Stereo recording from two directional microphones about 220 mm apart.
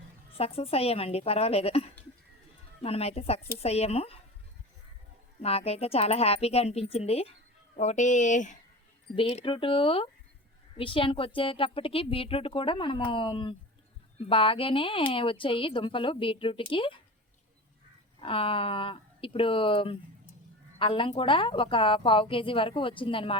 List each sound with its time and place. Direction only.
0.3 s speech: 25° left (ahead or behind)
5.4 s speech: 30° left (ahead or behind)
18.2 s speech: 25° left (ahead or behind)